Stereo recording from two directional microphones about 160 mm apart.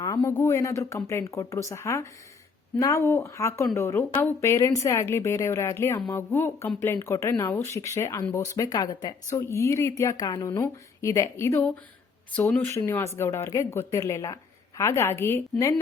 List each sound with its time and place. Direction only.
0.2 s a woman's voice: 15° left (ahead or behind)
12.6 s speech: 15° left (ahead or behind)